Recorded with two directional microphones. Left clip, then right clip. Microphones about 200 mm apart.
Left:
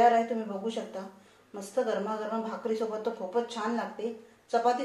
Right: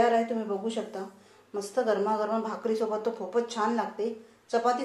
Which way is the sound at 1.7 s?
30° right (ahead or behind).